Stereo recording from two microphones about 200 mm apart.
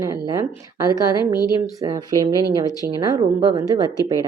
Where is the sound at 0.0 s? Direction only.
15° right (ahead or behind).